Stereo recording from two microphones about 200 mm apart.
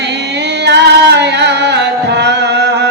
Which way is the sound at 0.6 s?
60° right (ahead or behind).